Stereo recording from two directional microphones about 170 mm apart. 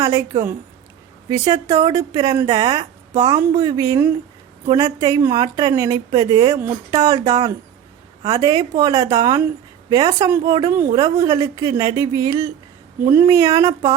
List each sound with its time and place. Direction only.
0.0 s a woman's voice: 20° right (ahead or behind)